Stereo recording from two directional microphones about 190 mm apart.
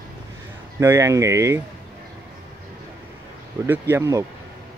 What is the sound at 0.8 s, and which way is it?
Speech, 15° right (ahead or behind).